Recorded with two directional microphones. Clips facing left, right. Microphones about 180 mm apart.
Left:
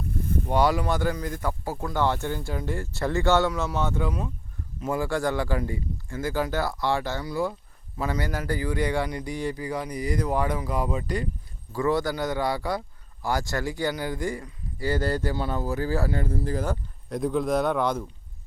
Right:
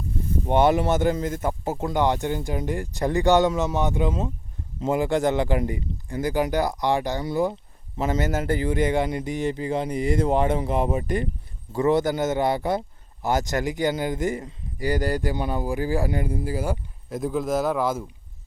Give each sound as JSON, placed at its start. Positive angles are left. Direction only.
{"t": 0.4, "sound": "a man's voice", "side_deg": -25}